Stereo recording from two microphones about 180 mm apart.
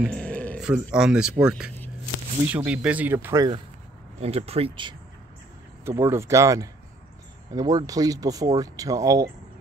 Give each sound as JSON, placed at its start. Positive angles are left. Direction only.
{"t": 0.1, "sound": "a sound", "side_deg": 5}
{"t": 0.9, "sound": "speech", "side_deg": -5}
{"t": 4.2, "sound": "speech", "side_deg": -35}
{"t": 5.9, "sound": "speech", "side_deg": -15}